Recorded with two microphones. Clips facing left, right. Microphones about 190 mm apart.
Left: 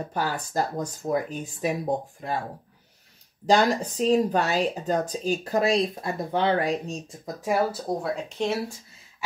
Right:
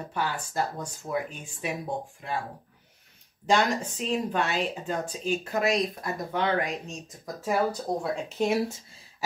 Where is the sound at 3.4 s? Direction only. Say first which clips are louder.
Left 4 dB; 35° left (ahead or behind).